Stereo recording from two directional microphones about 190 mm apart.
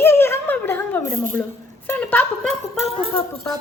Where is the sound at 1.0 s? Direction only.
45° right (ahead or behind).